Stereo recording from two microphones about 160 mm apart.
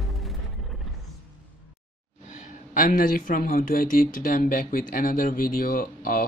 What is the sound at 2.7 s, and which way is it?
Speech, 60° left (ahead or behind).